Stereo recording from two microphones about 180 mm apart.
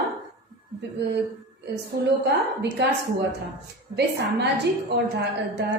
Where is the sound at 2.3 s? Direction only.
65° right (ahead or behind).